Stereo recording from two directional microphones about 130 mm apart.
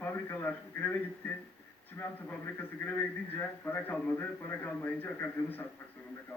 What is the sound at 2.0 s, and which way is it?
A man's voice, 20° left (ahead or behind).